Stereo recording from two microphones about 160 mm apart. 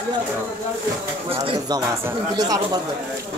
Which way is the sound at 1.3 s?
35° right (ahead or behind).